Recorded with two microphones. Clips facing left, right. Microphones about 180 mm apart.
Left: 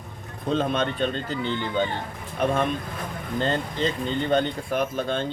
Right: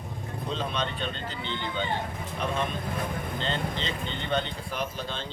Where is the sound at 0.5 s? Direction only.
50° left (ahead or behind).